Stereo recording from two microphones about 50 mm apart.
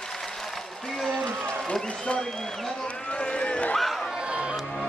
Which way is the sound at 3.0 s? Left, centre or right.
Centre.